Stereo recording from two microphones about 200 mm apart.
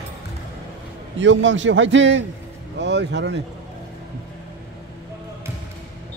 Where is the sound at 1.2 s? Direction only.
65° right (ahead or behind).